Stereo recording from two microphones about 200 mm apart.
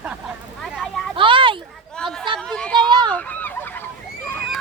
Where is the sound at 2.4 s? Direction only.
5° left (ahead or behind).